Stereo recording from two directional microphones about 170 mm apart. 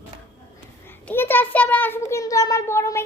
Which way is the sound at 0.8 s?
10° left (ahead or behind).